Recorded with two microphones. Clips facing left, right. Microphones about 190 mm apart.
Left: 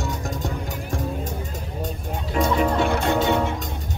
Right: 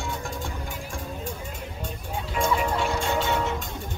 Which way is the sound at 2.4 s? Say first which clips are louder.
Left 4 dB; 45° left (ahead or behind).